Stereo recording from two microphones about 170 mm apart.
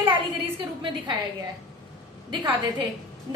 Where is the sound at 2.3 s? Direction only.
25° right (ahead or behind).